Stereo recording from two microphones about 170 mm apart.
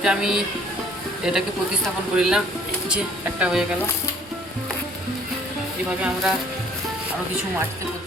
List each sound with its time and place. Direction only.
0.0 s a man's voice: 5° right (ahead or behind)
3.4 s a man's voice: 5° right (ahead or behind)